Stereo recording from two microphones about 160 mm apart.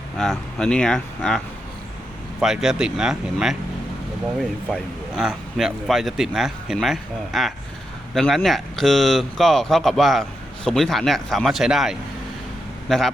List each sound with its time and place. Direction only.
0.2 s speech: 5° left (ahead or behind)
2.4 s speech: 5° right (ahead or behind)